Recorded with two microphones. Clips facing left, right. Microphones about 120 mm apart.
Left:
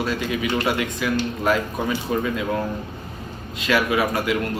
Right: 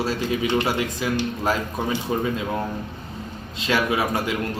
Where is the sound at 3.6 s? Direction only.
25° right (ahead or behind).